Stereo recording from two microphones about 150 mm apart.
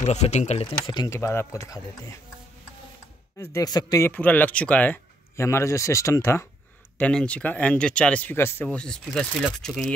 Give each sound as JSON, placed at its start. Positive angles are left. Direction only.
{"t": 0.0, "sound": "speech", "side_deg": 45}
{"t": 3.3, "sound": "speech", "side_deg": 25}
{"t": 4.1, "sound": "speech", "side_deg": 10}
{"t": 7.0, "sound": "speech", "side_deg": 5}
{"t": 8.6, "sound": "speech", "side_deg": 5}